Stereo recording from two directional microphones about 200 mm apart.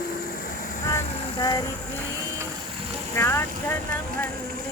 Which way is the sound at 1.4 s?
20° left (ahead or behind).